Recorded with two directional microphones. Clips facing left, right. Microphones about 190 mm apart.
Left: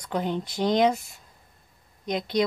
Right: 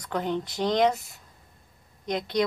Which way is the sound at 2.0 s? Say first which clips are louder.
Left 1 dB; 15° left (ahead or behind).